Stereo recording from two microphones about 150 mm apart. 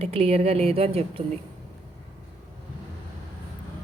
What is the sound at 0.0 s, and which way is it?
A woman's voice, 40° right (ahead or behind).